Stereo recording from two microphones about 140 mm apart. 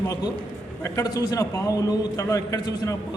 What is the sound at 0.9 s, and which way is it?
A man's voice, 25° left (ahead or behind).